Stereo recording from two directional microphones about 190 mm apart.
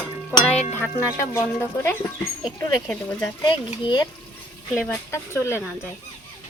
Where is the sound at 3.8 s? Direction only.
25° left (ahead or behind).